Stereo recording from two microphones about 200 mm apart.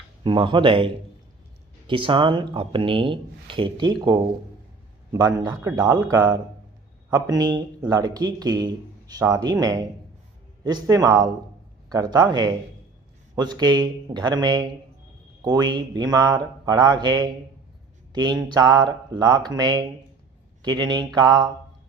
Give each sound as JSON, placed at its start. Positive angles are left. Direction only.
{"t": 0.3, "sound": "speech", "side_deg": -25}
{"t": 1.9, "sound": "speech", "side_deg": -25}